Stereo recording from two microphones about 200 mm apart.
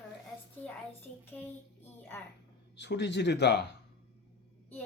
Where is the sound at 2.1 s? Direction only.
10° left (ahead or behind).